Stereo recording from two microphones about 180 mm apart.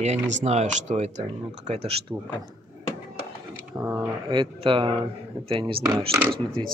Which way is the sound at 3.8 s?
20° right (ahead or behind).